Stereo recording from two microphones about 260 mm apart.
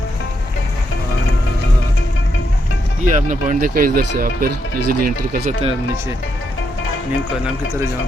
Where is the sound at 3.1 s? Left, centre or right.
Right.